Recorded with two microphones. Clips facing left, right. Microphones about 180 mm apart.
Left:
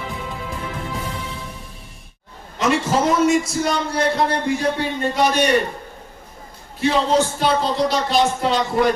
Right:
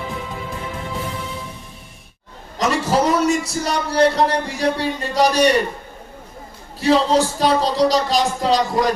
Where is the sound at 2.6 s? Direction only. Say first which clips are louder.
Left 1 dB; 40° right (ahead or behind).